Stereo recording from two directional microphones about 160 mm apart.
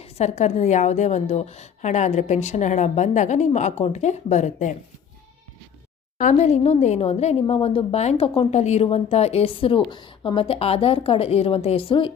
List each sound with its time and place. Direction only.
0.0 s a woman's voice: 45° left (ahead or behind)
6.3 s a woman's voice: 45° left (ahead or behind)